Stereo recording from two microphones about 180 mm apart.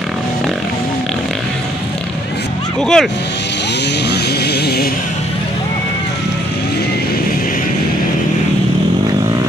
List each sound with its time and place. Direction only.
2.8 s speech: 5° left (ahead or behind)
4.1 s music: 65° left (ahead or behind)